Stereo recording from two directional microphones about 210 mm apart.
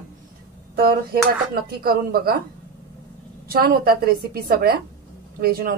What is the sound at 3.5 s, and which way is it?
A woman's voice, 45° right (ahead or behind).